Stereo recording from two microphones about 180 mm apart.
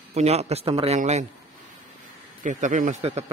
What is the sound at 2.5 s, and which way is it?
Speech, 45° right (ahead or behind).